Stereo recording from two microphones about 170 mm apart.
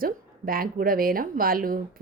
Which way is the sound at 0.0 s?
60° right (ahead or behind).